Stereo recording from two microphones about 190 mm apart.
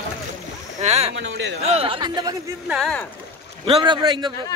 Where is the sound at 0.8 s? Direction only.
35° right (ahead or behind).